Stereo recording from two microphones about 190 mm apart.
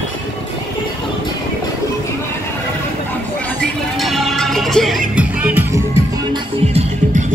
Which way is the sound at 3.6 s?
Centre (ahead or behind).